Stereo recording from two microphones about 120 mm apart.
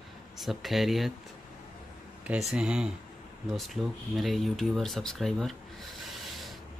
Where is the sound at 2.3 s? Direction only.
5° right (ahead or behind).